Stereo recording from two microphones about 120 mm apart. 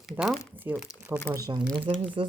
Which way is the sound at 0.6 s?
20° right (ahead or behind).